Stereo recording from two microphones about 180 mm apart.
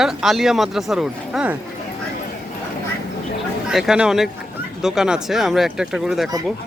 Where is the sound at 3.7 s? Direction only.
Centre (ahead or behind).